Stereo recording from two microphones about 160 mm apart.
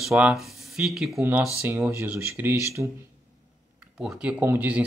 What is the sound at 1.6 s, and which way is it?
Speech, 15° right (ahead or behind).